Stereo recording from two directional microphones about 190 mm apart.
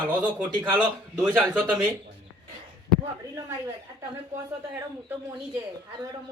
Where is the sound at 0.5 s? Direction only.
25° right (ahead or behind).